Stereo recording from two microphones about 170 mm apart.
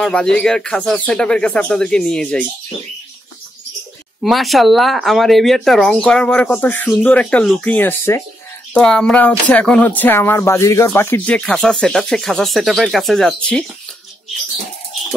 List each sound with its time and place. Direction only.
0.0 s speech: 5° left (ahead or behind)
4.2 s speech: centre (ahead or behind)